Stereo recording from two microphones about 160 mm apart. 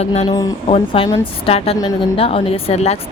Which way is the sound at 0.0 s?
40° left (ahead or behind).